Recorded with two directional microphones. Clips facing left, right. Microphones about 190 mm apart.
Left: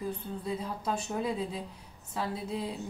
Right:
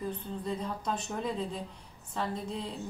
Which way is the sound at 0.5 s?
5° left (ahead or behind).